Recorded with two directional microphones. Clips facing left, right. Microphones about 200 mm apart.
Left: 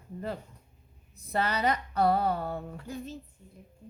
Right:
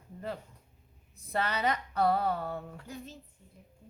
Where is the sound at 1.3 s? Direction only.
35° left (ahead or behind).